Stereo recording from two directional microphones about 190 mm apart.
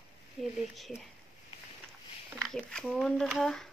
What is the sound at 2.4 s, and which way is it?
Speech, 5° left (ahead or behind).